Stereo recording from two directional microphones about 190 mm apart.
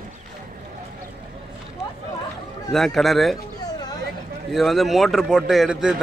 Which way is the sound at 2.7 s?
Centre (ahead or behind).